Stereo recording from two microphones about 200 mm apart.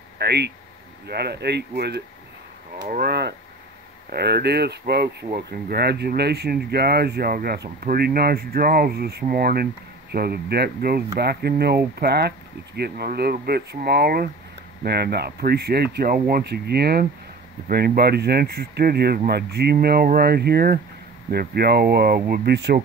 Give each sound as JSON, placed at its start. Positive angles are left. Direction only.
{"t": 0.2, "sound": "speech", "side_deg": -55}